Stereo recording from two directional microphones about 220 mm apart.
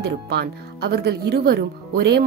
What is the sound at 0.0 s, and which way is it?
Speech, 50° right (ahead or behind).